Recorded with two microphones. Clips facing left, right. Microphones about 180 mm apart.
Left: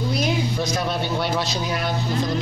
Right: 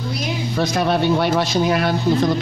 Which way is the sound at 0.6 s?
70° right (ahead or behind).